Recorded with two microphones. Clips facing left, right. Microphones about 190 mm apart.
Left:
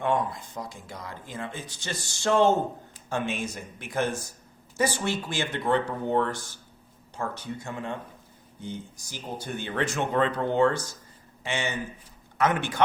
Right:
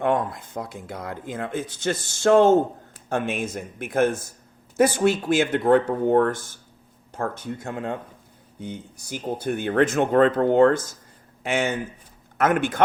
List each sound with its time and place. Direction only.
0.0 s speech: 55° right (ahead or behind)